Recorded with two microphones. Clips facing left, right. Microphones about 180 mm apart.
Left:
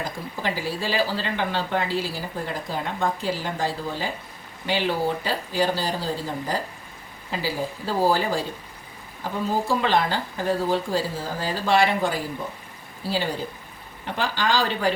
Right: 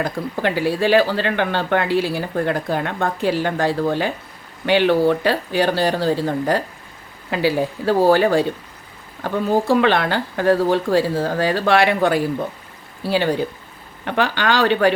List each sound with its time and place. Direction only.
0.0 s speech: 65° right (ahead or behind)